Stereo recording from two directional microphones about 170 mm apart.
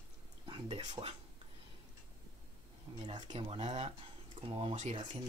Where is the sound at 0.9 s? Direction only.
35° right (ahead or behind).